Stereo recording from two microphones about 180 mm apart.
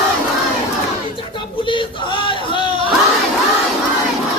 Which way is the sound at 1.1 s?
30° left (ahead or behind).